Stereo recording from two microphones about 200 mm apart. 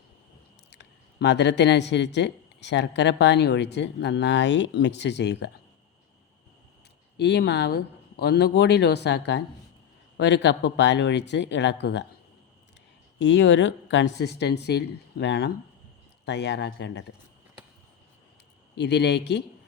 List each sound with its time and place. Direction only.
0.7 s speech: 60° left (ahead or behind)
7.2 s speech: 60° left (ahead or behind)
13.1 s speech: 65° left (ahead or behind)
18.8 s speech: 60° left (ahead or behind)